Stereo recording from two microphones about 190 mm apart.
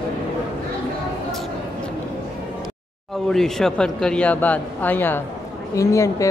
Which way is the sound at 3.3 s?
Centre (ahead or behind).